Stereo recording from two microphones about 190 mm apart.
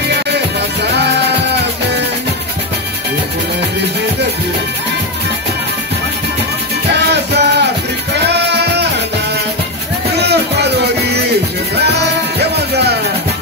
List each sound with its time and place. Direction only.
0.9 s music: 60° right (ahead or behind)
6.9 s music: 60° right (ahead or behind)
10.1 s music: 60° right (ahead or behind)